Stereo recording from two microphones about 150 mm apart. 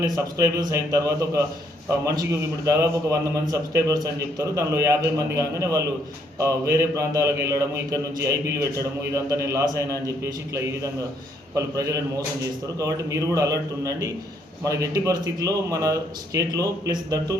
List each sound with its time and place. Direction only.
0.0 s a man's voice: 25° right (ahead or behind)
2.6 s a man's voice: 20° right (ahead or behind)